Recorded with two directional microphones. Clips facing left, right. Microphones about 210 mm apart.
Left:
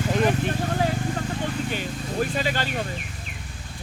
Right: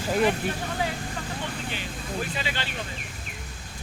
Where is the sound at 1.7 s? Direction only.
45° left (ahead or behind).